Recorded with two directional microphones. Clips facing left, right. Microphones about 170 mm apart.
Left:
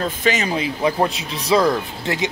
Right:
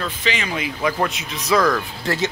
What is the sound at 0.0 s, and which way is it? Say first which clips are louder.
Speech: left 4 dB; 40° left (ahead or behind).